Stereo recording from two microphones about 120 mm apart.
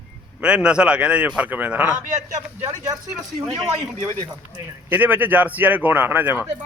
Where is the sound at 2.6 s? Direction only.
25° right (ahead or behind).